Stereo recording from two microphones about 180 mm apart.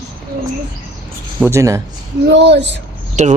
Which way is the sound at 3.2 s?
40° right (ahead or behind).